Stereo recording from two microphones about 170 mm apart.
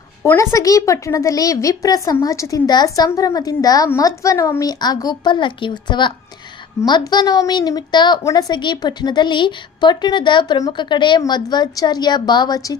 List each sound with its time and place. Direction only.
0.2 s a child's voice: 15° left (ahead or behind)